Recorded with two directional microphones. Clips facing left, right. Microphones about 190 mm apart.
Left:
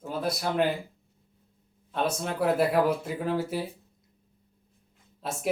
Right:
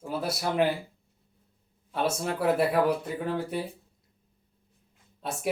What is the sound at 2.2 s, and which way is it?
Speech, centre (ahead or behind).